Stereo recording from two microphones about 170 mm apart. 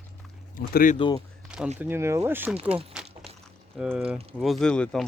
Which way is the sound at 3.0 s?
5° right (ahead or behind).